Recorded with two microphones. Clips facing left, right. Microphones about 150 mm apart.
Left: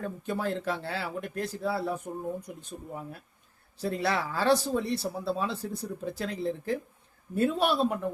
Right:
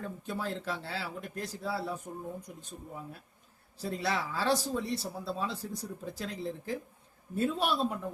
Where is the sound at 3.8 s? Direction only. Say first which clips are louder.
Left 4 dB; 60° left (ahead or behind).